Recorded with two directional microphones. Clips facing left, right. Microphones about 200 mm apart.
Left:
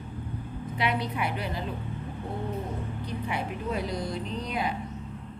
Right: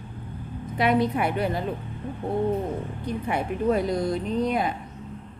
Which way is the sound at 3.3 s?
50° right (ahead or behind).